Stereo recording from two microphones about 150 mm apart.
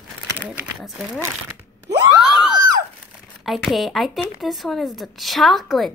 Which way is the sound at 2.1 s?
5° right (ahead or behind).